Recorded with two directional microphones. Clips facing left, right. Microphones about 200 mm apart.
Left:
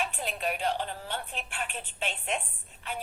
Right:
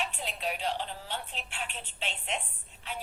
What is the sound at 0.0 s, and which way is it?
A woman's voice, 50° left (ahead or behind).